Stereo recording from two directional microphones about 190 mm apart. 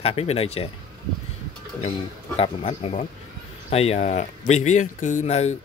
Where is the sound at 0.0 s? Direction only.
30° left (ahead or behind).